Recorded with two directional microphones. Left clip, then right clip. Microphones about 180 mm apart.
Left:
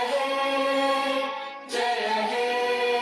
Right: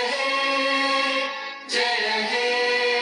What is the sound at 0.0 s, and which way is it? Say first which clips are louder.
Music: right 2 dB; 50° left (ahead or behind).